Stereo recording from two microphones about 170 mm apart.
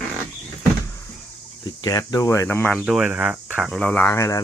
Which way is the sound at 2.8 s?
5° right (ahead or behind).